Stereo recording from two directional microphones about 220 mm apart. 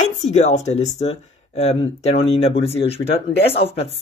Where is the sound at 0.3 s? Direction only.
30° left (ahead or behind).